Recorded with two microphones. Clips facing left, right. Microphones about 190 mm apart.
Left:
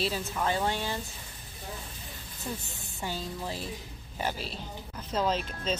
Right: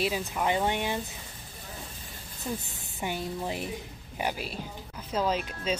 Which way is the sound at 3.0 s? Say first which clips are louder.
Right 3 dB; 20° right (ahead or behind).